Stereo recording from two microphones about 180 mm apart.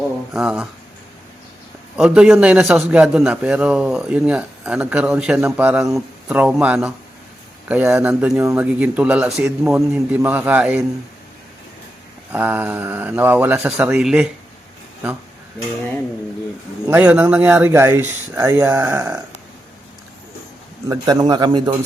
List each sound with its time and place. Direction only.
0.3 s a man's voice: 5° right (ahead or behind)
2.0 s a man's voice: 5° right (ahead or behind)
12.3 s speech: 10° right (ahead or behind)
16.8 s speech: 5° right (ahead or behind)
20.8 s a man's voice: 20° right (ahead or behind)